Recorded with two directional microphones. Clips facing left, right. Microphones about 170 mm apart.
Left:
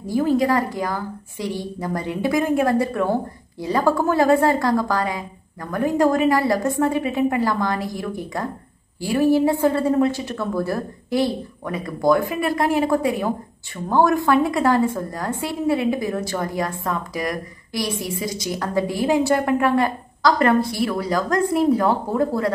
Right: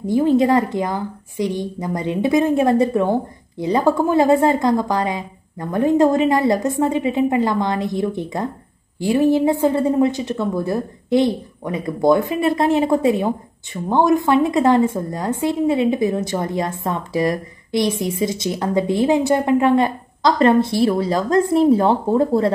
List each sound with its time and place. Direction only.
0.0 s a woman's voice: 20° right (ahead or behind)